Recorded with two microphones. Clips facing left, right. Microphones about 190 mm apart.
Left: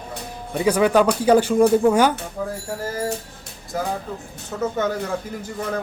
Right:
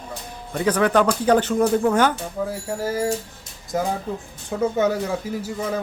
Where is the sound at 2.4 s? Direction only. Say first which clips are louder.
Right 2 dB; 10° right (ahead or behind).